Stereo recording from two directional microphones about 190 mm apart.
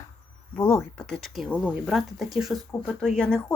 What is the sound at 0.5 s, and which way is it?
Speech, 5° left (ahead or behind).